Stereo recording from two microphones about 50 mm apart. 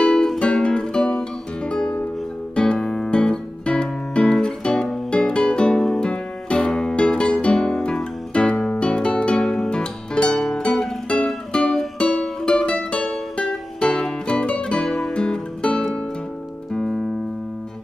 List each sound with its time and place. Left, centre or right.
0.0 s music: centre
14.9 s music: centre
15.1 s music: centre